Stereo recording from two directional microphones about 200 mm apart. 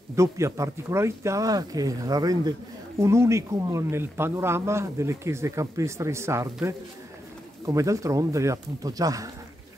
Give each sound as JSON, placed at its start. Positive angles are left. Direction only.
{"t": 0.1, "sound": "speech", "side_deg": -15}